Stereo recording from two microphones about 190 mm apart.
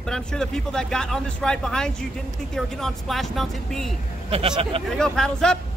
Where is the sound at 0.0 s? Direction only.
5° left (ahead or behind).